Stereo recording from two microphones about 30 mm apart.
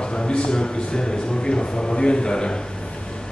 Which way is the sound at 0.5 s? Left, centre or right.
Left.